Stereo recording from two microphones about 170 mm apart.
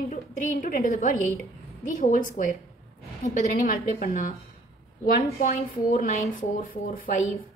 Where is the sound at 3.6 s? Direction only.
55° left (ahead or behind).